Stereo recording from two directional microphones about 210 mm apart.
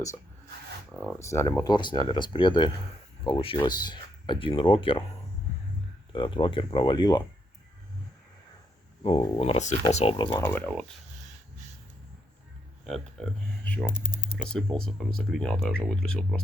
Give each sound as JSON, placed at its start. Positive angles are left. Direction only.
{"t": 0.9, "sound": "speech", "side_deg": 10}
{"t": 6.1, "sound": "speech", "side_deg": 25}
{"t": 9.0, "sound": "speech", "side_deg": 25}
{"t": 10.2, "sound": "speech", "side_deg": 10}
{"t": 12.8, "sound": "speech", "side_deg": 0}